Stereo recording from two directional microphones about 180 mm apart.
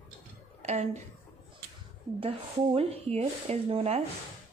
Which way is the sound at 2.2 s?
30° right (ahead or behind).